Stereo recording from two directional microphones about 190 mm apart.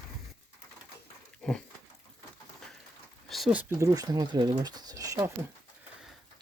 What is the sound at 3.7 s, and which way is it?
Speech, 15° right (ahead or behind).